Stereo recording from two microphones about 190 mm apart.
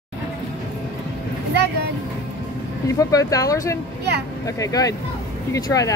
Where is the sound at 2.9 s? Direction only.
20° left (ahead or behind).